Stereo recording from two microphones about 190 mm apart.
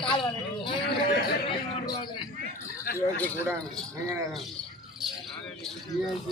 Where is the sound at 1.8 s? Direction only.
20° left (ahead or behind).